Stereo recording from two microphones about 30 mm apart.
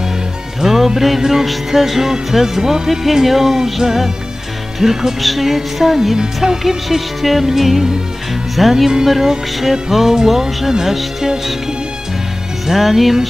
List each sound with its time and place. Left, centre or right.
0.6 s music: centre
6.1 s speech: right
7.2 s music: centre
12.6 s music: centre